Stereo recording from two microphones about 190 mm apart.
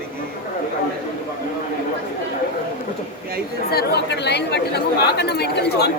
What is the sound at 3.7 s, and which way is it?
A woman's voice, 60° left (ahead or behind).